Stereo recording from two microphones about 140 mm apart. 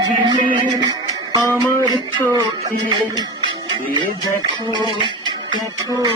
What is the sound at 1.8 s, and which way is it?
Music, 30° right (ahead or behind).